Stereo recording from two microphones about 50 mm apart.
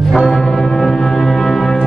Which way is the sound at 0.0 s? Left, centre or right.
Centre.